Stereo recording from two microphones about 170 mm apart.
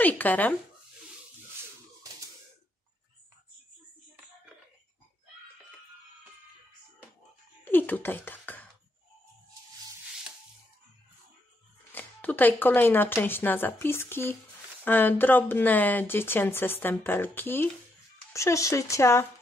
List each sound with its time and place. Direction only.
0.0 s speech: 10° left (ahead or behind)
7.6 s speech: 10° left (ahead or behind)
11.9 s speech: 10° left (ahead or behind)